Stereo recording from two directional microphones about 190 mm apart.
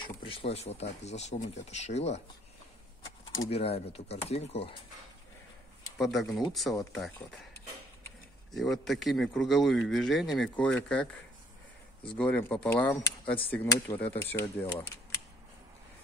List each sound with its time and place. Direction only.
0.0 s speech: 25° left (ahead or behind)
3.4 s speech: 30° left (ahead or behind)
5.9 s speech: centre (ahead or behind)
8.5 s speech: centre (ahead or behind)
12.2 s speech: 10° left (ahead or behind)